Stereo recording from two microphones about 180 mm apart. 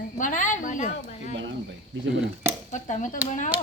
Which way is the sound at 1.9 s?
90° right.